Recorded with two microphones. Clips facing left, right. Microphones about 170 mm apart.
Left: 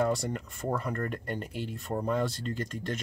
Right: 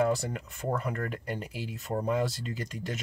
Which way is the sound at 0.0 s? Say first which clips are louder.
Right 1 dB; centre (ahead or behind).